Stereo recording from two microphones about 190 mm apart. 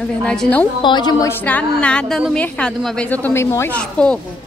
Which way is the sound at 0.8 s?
20° left (ahead or behind).